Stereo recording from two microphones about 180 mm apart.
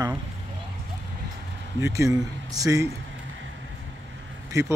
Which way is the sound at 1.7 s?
15° right (ahead or behind).